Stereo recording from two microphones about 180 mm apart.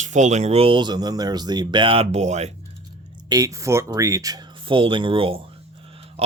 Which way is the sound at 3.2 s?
20° right (ahead or behind).